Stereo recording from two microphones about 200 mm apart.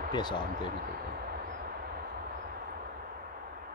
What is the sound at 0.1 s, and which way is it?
Speech, 20° left (ahead or behind).